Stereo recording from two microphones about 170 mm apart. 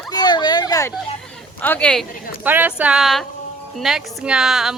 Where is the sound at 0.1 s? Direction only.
25° left (ahead or behind).